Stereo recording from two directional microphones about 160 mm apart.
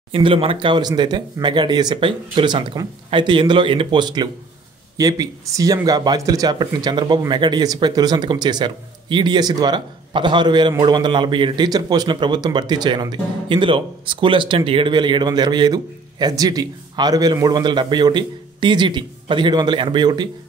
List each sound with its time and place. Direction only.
0.1 s a man's voice: 35° right (ahead or behind)